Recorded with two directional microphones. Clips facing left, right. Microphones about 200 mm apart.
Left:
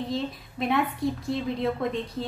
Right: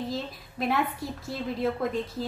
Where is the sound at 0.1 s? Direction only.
Centre (ahead or behind).